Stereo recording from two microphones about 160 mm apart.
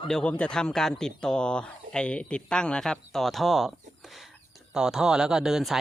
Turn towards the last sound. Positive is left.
turn(degrees=0)  # may be behind; listen again after turning